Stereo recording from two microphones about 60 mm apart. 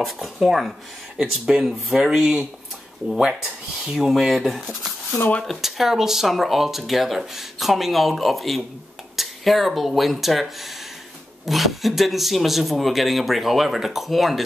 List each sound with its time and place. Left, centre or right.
0.0 s speech: centre